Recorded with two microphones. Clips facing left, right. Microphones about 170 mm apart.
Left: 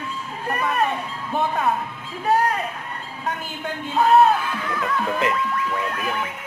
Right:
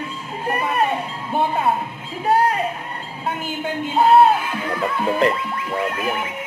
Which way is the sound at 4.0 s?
30° right (ahead or behind).